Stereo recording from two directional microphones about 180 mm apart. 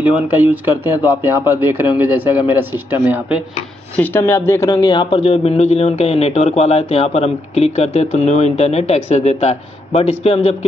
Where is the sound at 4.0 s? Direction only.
10° left (ahead or behind).